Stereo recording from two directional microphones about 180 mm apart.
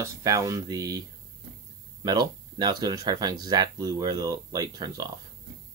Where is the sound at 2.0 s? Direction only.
20° right (ahead or behind).